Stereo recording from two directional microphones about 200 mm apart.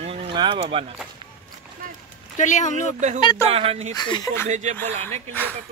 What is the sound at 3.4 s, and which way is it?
Speech, 30° right (ahead or behind).